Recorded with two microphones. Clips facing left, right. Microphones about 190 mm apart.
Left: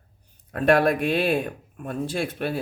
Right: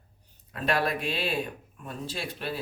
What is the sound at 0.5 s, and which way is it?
Speech, 55° left (ahead or behind).